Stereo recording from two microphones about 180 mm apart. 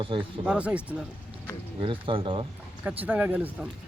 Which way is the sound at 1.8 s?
30° right (ahead or behind).